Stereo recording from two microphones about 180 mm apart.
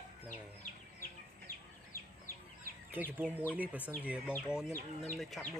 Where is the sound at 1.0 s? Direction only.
50° left (ahead or behind).